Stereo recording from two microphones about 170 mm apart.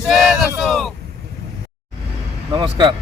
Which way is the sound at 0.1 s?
Centre (ahead or behind).